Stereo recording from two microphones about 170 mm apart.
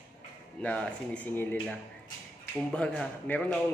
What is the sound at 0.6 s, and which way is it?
A man's voice, 5° left (ahead or behind).